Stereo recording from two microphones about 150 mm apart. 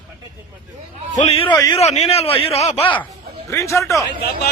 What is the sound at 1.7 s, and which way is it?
A man's voice, 45° left (ahead or behind).